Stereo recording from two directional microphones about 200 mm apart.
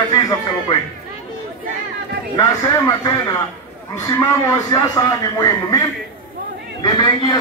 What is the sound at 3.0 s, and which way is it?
Speech, 20° left (ahead or behind).